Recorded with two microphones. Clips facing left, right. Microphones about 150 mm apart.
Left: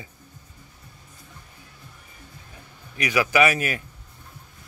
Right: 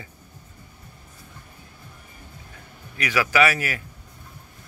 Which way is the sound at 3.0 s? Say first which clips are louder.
Left 1 dB; 15° left (ahead or behind).